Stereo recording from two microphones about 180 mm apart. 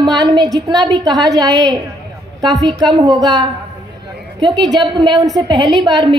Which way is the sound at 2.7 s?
25° right (ahead or behind).